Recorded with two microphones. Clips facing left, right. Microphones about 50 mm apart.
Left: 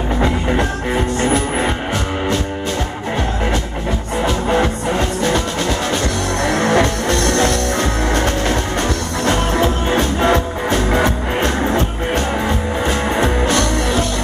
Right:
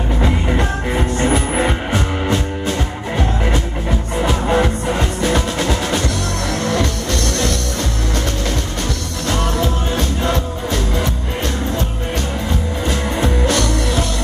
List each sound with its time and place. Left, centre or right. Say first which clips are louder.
0.2 s music: left 1 dB; centre
4.2 s music: even; centre
6.4 s music: left 6 dB; centre
6.7 s music: left 4 dB; left
9.2 s music: left 3 dB; left
12.8 s music: left 3 dB; centre